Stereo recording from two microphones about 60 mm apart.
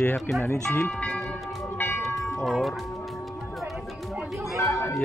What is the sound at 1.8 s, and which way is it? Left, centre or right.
Bell, left.